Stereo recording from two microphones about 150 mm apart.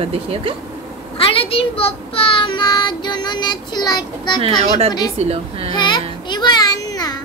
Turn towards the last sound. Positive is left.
turn(degrees=25)  # may be behind; listen again after turning